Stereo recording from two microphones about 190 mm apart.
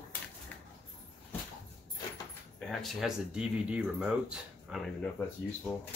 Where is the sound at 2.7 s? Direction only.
Centre (ahead or behind).